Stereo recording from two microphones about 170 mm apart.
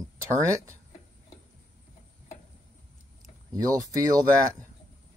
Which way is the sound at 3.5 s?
20° right (ahead or behind).